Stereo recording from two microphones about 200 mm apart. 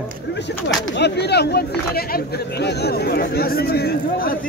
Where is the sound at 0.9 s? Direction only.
55° left (ahead or behind).